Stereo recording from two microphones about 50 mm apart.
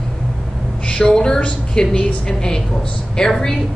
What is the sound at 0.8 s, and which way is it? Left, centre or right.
A woman's voice, centre.